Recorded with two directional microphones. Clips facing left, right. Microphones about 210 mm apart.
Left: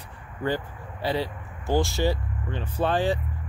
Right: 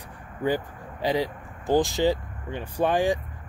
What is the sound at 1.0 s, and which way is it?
Speech, 15° right (ahead or behind).